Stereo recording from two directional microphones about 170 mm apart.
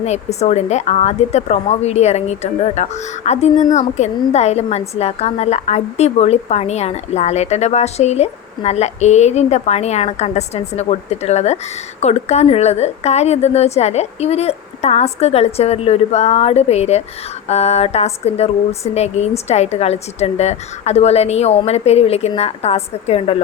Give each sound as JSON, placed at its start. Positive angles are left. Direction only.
{"t": 0.0, "sound": "a woman's voice", "side_deg": 40}